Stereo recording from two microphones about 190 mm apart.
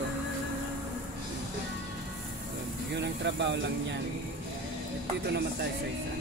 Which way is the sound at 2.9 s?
65° right (ahead or behind).